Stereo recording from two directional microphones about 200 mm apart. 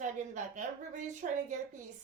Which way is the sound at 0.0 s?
35° right (ahead or behind).